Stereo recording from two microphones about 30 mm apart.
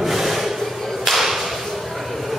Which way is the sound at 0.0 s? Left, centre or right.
Centre.